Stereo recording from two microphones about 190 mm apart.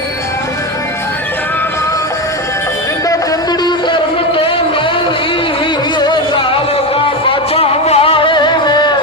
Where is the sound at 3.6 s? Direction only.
25° left (ahead or behind).